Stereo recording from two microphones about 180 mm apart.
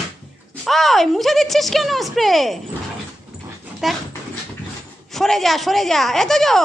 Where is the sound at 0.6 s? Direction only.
Centre (ahead or behind).